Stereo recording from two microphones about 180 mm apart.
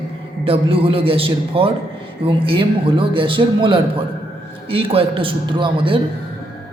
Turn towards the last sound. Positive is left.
turn(degrees=-30)  # may be behind; listen again after turning